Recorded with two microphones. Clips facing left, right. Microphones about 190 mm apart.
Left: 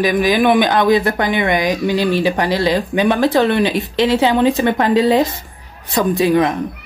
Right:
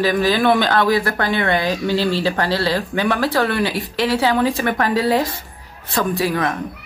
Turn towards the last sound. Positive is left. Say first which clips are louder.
# left 6 dB
turn(degrees=20)  # may be behind; listen again after turning